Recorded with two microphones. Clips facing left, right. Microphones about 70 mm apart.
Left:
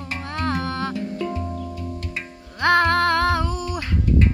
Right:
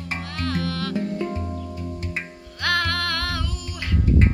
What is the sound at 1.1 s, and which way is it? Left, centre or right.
Music, right.